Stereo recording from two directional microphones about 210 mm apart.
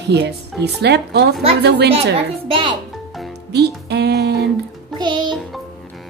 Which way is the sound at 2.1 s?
25° right (ahead or behind).